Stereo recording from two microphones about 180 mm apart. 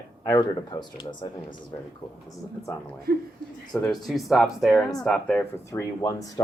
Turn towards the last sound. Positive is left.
turn(degrees=20)  # may be behind; listen again after turning